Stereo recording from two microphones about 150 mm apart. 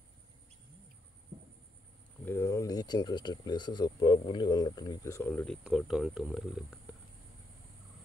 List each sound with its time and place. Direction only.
2.2 s speech: 15° left (ahead or behind)
5.3 s speech: 5° left (ahead or behind)